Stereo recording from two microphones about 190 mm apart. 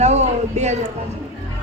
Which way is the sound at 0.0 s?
35° right (ahead or behind).